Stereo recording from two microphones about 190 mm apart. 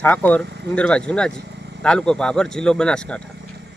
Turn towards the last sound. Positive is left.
turn(degrees=5)  # may be behind; listen again after turning